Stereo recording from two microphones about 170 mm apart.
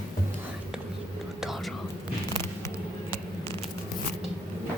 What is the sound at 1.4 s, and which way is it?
Whispering, centre (ahead or behind).